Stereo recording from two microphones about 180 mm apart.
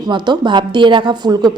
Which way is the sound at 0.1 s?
25° right (ahead or behind).